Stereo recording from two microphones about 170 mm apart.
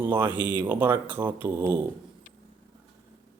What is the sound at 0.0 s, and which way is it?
A man's voice, 10° right (ahead or behind).